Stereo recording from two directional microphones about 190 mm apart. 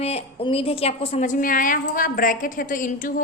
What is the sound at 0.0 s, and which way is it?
A woman's voice, 35° left (ahead or behind).